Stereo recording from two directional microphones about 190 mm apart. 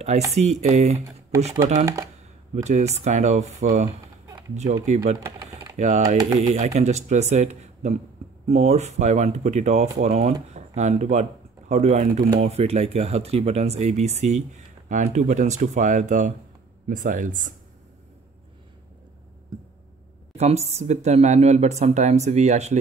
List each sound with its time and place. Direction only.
0.3 s speech: 35° right (ahead or behind)
2.5 s speech: 35° right (ahead or behind)
20.3 s speech: 35° right (ahead or behind)